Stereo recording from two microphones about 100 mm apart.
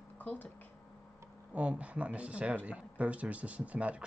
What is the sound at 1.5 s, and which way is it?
Speech, 10° right (ahead or behind).